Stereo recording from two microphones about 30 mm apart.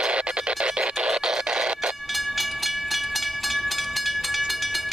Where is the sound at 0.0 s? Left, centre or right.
Right.